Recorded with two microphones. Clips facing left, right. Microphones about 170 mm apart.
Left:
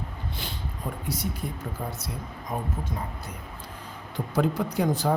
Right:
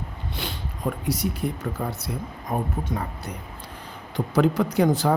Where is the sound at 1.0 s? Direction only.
70° right (ahead or behind).